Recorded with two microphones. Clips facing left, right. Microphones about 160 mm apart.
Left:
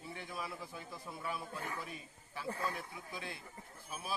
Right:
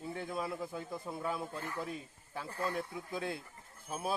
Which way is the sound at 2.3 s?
55° right (ahead or behind).